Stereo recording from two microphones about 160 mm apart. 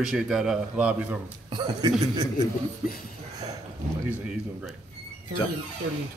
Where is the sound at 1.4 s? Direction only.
30° right (ahead or behind).